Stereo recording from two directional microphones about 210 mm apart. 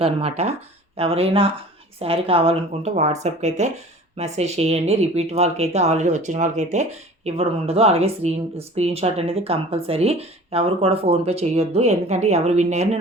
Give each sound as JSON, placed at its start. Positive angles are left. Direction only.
{"t": 0.0, "sound": "speech", "side_deg": -30}